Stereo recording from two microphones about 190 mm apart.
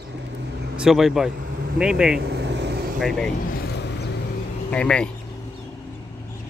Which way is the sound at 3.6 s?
60° left (ahead or behind).